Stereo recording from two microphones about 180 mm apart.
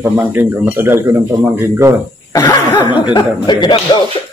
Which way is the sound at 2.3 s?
20° left (ahead or behind).